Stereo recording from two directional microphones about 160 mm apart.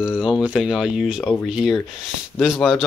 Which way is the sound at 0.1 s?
30° left (ahead or behind).